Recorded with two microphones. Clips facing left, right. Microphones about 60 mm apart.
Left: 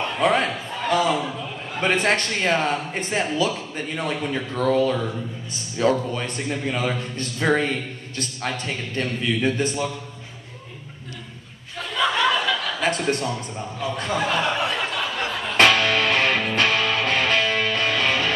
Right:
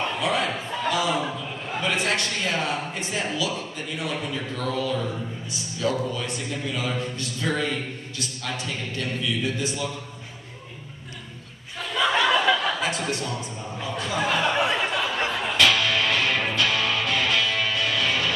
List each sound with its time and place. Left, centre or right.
0.2 s a sound: left
0.8 s chuckle: left
1.8 s a man's voice: left
11.9 s chuckle: centre
13.1 s a man's voice: left
14.1 s speech: centre
14.6 s a sound: centre
15.5 s music: left